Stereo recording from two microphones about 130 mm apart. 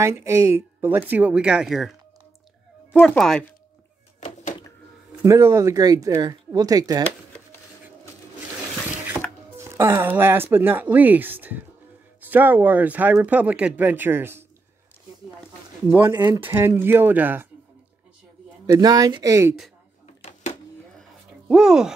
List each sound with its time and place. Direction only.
0.0 s speech: 20° right (ahead or behind); by 3.4 s 5° left (ahead or behind)
5.2 s speech: 20° right (ahead or behind)
9.6 s speech: 20° right (ahead or behind)
16.1 s speech: 30° right (ahead or behind)
16.4 s speech: 15° right (ahead or behind)
18.7 s speech: 30° right (ahead or behind)
20.2 s a sound: 55° left (ahead or behind)
21.5 s speech: 5° right (ahead or behind)